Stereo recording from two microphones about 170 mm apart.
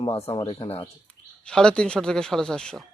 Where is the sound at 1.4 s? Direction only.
5° left (ahead or behind).